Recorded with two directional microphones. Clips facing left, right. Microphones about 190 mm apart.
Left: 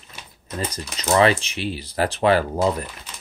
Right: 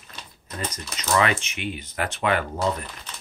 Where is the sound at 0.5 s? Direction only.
30° left (ahead or behind).